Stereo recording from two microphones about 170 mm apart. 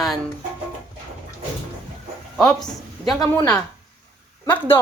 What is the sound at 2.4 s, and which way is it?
Speech, 5° left (ahead or behind).